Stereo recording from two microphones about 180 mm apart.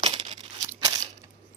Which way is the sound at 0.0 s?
35° right (ahead or behind).